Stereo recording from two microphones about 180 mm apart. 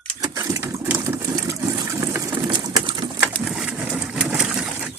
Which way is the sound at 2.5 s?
25° right (ahead or behind).